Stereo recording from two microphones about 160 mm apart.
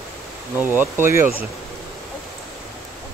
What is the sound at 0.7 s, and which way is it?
Speech, 15° right (ahead or behind).